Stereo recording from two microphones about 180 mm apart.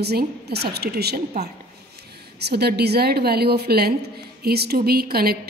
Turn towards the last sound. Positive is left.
turn(degrees=-60)  # may be behind; listen again after turning